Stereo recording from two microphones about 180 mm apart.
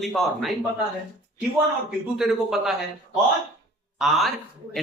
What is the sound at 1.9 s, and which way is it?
Speech, centre (ahead or behind).